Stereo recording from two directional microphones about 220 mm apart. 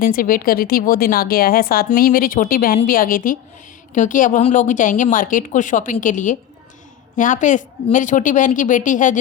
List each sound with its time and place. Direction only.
0.0 s a woman's voice: 40° left (ahead or behind)